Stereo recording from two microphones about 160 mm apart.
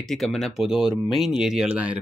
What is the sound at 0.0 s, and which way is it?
Speech, centre (ahead or behind).